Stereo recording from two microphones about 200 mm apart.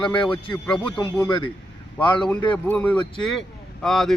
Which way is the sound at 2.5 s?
5° left (ahead or behind).